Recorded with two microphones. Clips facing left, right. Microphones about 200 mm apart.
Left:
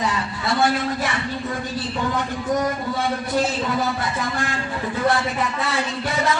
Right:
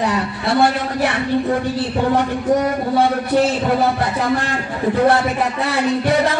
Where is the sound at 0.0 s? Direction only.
60° right (ahead or behind).